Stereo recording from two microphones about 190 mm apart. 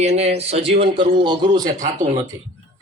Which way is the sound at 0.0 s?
35° right (ahead or behind).